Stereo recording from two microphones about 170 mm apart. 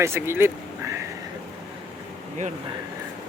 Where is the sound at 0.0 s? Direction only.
15° right (ahead or behind).